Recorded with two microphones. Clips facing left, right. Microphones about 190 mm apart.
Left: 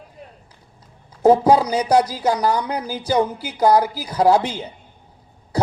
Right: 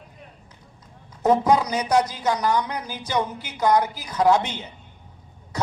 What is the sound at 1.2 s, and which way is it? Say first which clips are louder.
A man's voice: left 5 dB; 30° left (ahead or behind).